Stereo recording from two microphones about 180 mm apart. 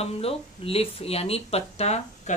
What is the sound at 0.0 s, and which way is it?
Speech, 35° left (ahead or behind).